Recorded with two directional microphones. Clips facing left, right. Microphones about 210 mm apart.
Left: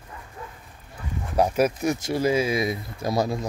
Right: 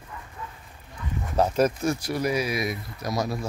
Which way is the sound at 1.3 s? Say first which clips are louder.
Left 1 dB; 10° left (ahead or behind).